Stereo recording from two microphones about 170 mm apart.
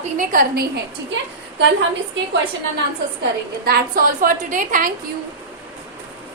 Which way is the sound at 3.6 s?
60° right (ahead or behind).